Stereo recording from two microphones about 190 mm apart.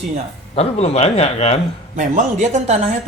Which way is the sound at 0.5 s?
35° left (ahead or behind).